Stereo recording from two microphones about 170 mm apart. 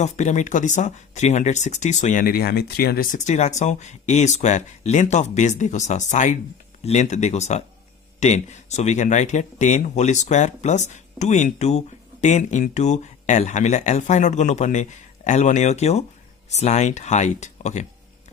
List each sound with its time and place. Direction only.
0.0 s speech: 45° left (ahead or behind)